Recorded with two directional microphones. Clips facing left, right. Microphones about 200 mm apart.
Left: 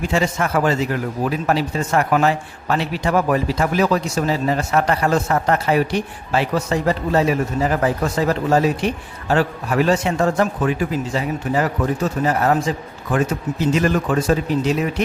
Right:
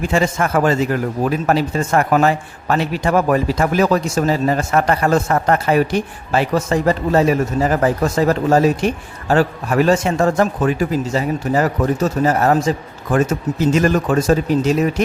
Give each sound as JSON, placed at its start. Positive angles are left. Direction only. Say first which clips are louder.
{"t": 0.1, "sound": "a man's voice", "louder": "right 2 dB", "side_deg": -50}